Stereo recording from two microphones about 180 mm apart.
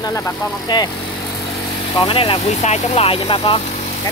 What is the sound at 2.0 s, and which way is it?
Speech, 30° left (ahead or behind).